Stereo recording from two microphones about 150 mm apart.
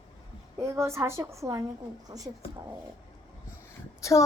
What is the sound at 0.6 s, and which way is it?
A woman's voice, 20° right (ahead or behind).